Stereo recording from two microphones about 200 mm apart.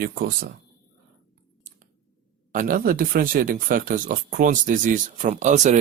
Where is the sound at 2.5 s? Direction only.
40° right (ahead or behind).